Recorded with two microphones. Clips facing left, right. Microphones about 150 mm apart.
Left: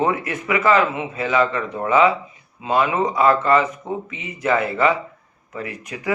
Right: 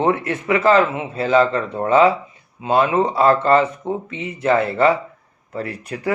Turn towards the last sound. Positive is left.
turn(degrees=-35)  # may be behind; listen again after turning